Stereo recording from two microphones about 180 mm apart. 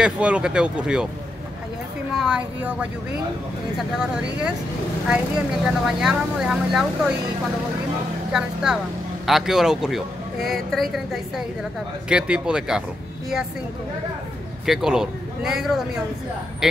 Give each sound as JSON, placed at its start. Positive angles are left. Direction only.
{"t": 0.0, "sound": "speech", "side_deg": -5}
{"t": 2.1, "sound": "speech", "side_deg": -5}
{"t": 4.0, "sound": "speech", "side_deg": -5}
{"t": 5.7, "sound": "speech", "side_deg": -5}
{"t": 8.3, "sound": "speech", "side_deg": -5}
{"t": 14.7, "sound": "speech", "side_deg": 0}